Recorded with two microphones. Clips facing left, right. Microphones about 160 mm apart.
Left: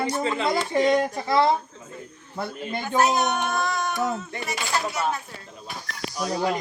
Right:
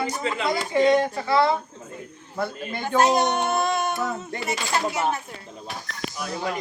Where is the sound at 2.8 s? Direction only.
30° right (ahead or behind).